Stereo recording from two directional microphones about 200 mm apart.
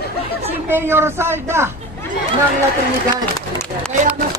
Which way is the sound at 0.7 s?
10° right (ahead or behind).